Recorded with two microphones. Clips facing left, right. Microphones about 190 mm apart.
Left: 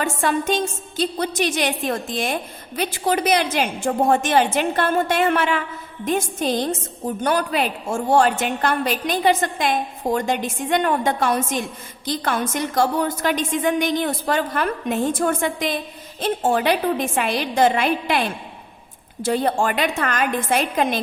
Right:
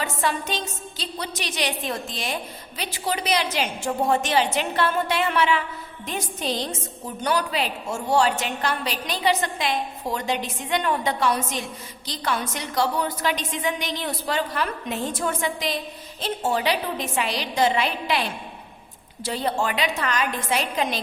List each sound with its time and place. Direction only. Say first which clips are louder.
0.0 s a woman's voice: left 5 dB; 50° left (ahead or behind)